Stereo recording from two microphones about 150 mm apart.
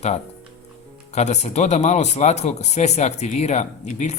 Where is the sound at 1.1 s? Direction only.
50° left (ahead or behind).